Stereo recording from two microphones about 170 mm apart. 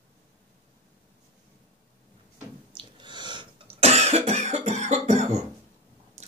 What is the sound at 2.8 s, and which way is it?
Cough, 25° right (ahead or behind).